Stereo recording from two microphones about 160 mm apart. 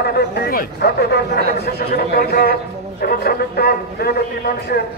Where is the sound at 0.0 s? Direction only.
85° left.